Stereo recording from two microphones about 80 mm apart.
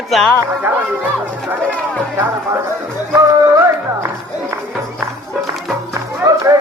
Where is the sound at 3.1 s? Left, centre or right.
Right.